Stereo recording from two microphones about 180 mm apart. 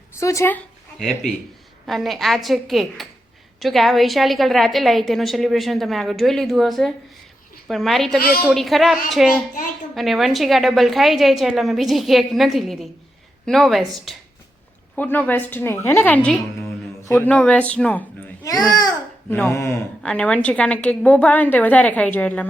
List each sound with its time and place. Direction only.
0.2 s a woman's voice: 15° left (ahead or behind)
0.9 s a woman's voice: centre (ahead or behind)
18.4 s a woman's voice: 20° left (ahead or behind)